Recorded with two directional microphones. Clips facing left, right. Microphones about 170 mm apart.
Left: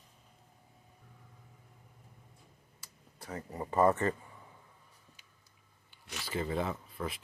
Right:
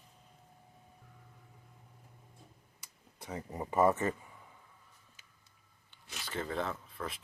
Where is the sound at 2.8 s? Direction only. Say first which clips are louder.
Even; 15° right (ahead or behind).